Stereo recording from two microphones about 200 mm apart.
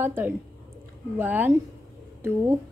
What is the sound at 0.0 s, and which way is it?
A woman's voice, 10° right (ahead or behind).